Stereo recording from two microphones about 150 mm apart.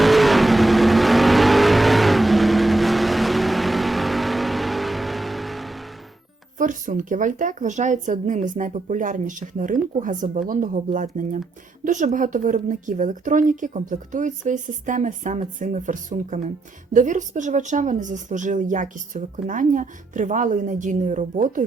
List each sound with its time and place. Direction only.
0.0 s vehicle: centre (ahead or behind)
6.6 s speech: 60° right (ahead or behind)